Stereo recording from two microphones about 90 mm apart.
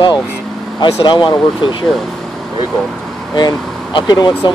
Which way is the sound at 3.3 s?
50° left (ahead or behind).